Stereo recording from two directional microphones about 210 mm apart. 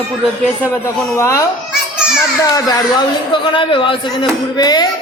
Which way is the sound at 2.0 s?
5° right (ahead or behind).